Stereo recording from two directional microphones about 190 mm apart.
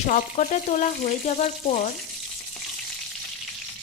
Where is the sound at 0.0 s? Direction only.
40° left (ahead or behind).